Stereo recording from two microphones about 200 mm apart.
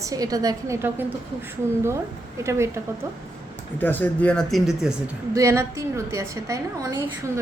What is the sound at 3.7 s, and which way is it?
Speech, 10° left (ahead or behind).